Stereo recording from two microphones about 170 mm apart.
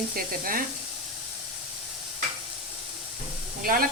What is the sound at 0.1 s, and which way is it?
Speech, 55° right (ahead or behind).